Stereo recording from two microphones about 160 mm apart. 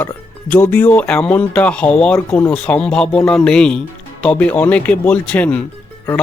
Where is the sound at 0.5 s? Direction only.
10° left (ahead or behind).